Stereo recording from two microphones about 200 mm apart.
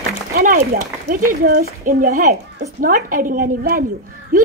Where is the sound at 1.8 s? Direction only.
40° right (ahead or behind).